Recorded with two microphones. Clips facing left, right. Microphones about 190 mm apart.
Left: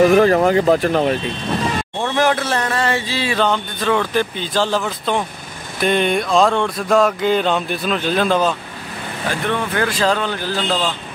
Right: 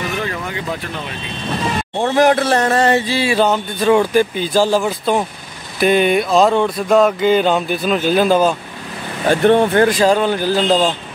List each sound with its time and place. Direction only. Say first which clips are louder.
0.1 s speech: left 12 dB; 45° left (ahead or behind)
2.0 s speech: right 5 dB; 40° right (ahead or behind)
3.2 s speech: right 3 dB; 10° right (ahead or behind)
5.8 s a sound: right 4 dB; 5° right (ahead or behind)
9.3 s speech: right 10 dB; 30° right (ahead or behind)
9.8 s speech: right 5 dB; 15° right (ahead or behind)